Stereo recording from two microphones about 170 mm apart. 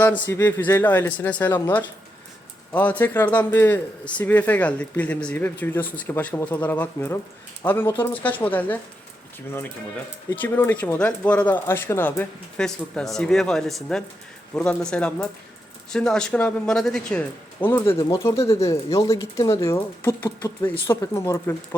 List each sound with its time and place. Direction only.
0.3 s speech: 10° left (ahead or behind)
10.2 s speech: 10° left (ahead or behind)